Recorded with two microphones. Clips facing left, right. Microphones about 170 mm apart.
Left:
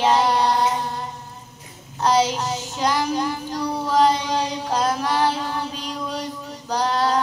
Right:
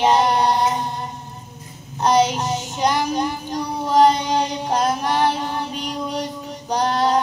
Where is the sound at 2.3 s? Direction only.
20° right (ahead or behind).